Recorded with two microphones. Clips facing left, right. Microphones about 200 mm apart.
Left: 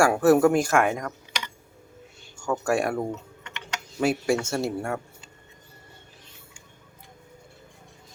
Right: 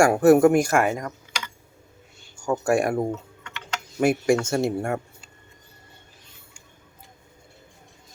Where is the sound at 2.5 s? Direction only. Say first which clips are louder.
Right 3 dB; 10° right (ahead or behind).